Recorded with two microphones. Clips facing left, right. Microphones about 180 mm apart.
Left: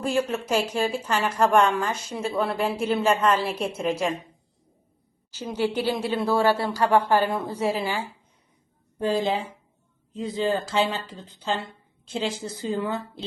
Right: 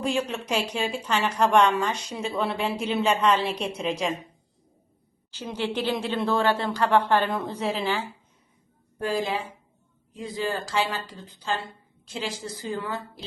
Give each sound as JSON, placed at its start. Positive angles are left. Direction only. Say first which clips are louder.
{"t": 0.1, "sound": "a woman's voice", "louder": "left 7 dB", "side_deg": 0}
{"t": 5.3, "sound": "speech", "louder": "left 3 dB", "side_deg": 10}
{"t": 9.0, "sound": "a woman's voice", "louder": "left 3 dB", "side_deg": 20}